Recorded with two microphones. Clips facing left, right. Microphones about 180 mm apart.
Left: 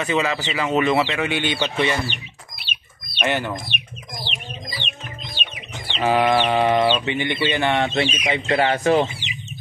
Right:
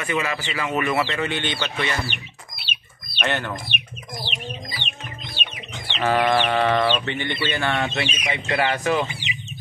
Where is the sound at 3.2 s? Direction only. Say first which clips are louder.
Left 3 dB; 10° left (ahead or behind).